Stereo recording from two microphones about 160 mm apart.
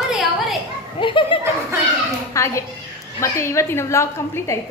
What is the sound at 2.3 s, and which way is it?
A woman's voice, 20° left (ahead or behind).